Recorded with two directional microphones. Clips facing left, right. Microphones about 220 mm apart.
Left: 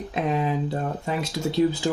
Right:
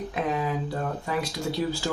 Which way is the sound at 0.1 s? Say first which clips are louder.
Left 4 dB; 25° left (ahead or behind).